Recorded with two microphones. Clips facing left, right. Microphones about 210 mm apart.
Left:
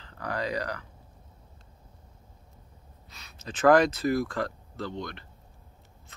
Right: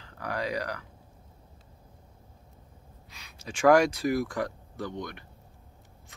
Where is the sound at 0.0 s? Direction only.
10° right (ahead or behind).